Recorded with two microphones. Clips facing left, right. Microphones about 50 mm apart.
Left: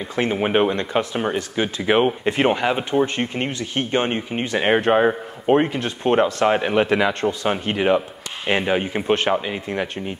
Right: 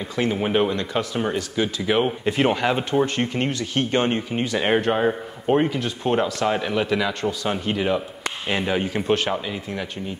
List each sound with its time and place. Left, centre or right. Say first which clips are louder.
0.1 s speech: left 2 dB; left